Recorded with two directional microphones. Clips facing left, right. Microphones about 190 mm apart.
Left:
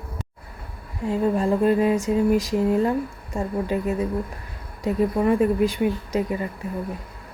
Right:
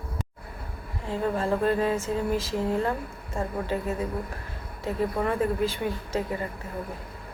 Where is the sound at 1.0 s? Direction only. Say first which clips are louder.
Left 5 dB; 15° left (ahead or behind).